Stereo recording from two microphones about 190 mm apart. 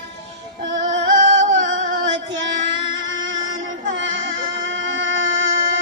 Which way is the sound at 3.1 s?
85° right.